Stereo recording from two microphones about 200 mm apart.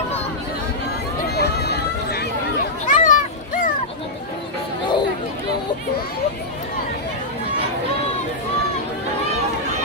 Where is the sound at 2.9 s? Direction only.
40° left (ahead or behind).